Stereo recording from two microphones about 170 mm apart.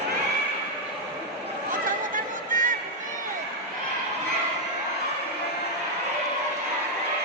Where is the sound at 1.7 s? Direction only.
55° right (ahead or behind).